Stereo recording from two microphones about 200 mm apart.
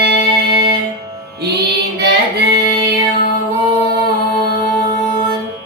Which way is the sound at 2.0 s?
55° right (ahead or behind).